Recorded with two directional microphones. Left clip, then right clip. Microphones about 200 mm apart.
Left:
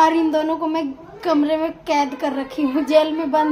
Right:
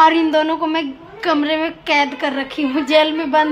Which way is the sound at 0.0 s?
15° right (ahead or behind).